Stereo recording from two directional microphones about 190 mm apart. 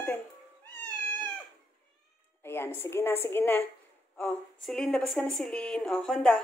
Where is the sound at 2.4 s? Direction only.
10° left (ahead or behind).